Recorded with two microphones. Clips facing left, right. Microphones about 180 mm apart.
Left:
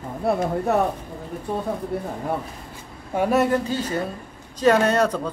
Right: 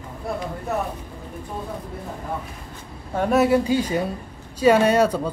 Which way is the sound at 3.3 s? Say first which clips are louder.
Right 4 dB; 5° right (ahead or behind).